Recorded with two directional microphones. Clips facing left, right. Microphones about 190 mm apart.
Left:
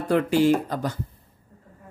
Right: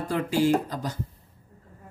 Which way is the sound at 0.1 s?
60° left (ahead or behind).